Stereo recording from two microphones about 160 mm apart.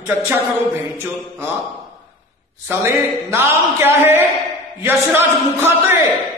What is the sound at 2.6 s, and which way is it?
A man's voice, 15° right (ahead or behind).